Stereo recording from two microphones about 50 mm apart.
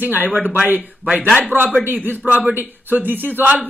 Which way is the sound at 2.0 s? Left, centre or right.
Right.